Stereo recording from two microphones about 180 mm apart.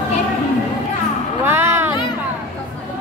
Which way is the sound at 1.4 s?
10° right (ahead or behind).